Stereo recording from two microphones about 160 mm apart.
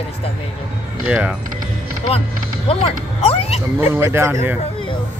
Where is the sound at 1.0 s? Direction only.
5° right (ahead or behind).